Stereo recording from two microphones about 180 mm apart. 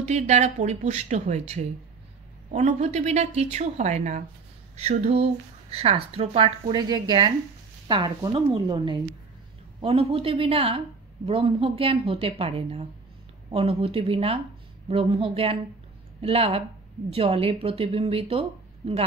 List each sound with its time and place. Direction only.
0.0 s speech: 35° right (ahead or behind)